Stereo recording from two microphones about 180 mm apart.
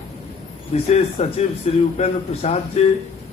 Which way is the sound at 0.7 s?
35° left (ahead or behind).